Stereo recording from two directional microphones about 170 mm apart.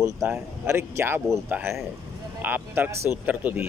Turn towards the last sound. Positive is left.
turn(degrees=-10)  # may be behind; listen again after turning